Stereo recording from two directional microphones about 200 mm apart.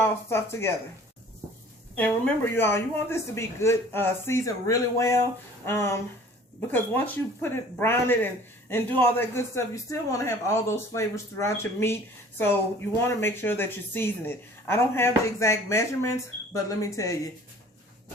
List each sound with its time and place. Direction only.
0.0 s speech: 10° left (ahead or behind)
2.0 s speech: 5° left (ahead or behind)
13.1 s speech: 10° left (ahead or behind)